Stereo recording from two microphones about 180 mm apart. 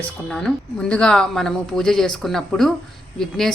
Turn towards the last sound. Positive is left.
turn(degrees=0)  # may be behind; listen again after turning